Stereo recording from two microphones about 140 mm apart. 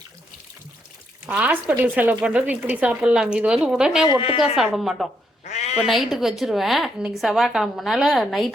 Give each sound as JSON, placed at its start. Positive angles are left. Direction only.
{"t": 1.3, "sound": "speech", "side_deg": -10}
{"t": 4.0, "sound": "a woman's voice", "side_deg": 35}
{"t": 4.7, "sound": "a woman's voice", "side_deg": 0}
{"t": 5.5, "sound": "a sound", "side_deg": 55}
{"t": 5.7, "sound": "a woman's voice", "side_deg": 0}